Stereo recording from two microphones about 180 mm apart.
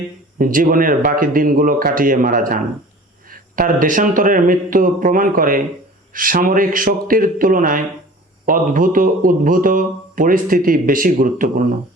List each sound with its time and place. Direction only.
0.3 s a man's voice: 50° right (ahead or behind)